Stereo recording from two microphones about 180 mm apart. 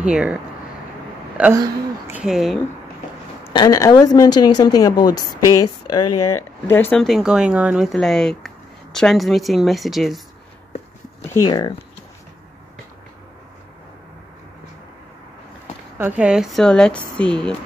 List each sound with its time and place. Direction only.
0.0 s a woman's voice: 5° right (ahead or behind)
1.6 s speech: 15° right (ahead or behind)
2.2 s a woman's voice: centre (ahead or behind)
3.4 s a woman's voice: 25° left (ahead or behind); by 10.2 s centre (ahead or behind)
11.2 s speech: 20° left (ahead or behind)
16.0 s a woman's voice: 10° right (ahead or behind)